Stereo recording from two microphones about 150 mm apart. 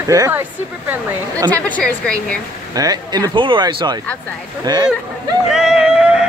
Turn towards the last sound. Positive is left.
turn(degrees=-5)  # may be behind; listen again after turning